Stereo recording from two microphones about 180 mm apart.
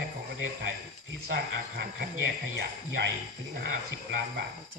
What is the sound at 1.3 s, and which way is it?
Speech, 65° right (ahead or behind).